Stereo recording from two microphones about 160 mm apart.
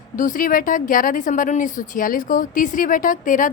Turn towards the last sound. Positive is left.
turn(degrees=55)  # may be behind; listen again after turning